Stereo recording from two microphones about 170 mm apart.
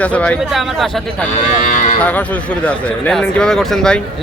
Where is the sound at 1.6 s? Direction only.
50° left (ahead or behind).